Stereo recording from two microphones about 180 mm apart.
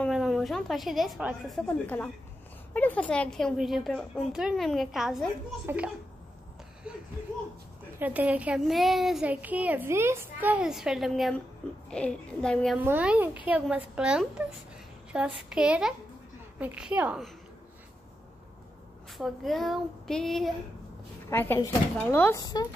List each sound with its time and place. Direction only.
0.0 s a woman's voice: centre (ahead or behind)
1.7 s a woman's voice: 10° left (ahead or behind)
8.0 s a woman's voice: 10° right (ahead or behind)
12.7 s a woman's voice: 10° right (ahead or behind)
19.1 s a woman's voice: centre (ahead or behind)
21.3 s speech: 15° left (ahead or behind)
22.4 s speech: 25° left (ahead or behind)